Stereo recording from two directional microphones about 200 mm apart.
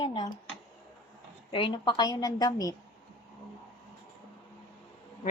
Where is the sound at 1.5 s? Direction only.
25° left (ahead or behind).